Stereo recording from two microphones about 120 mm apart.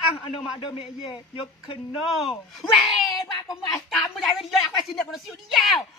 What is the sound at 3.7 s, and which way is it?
A woman's voice, centre (ahead or behind).